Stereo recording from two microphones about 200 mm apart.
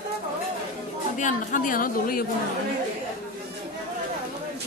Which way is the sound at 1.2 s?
40° left (ahead or behind).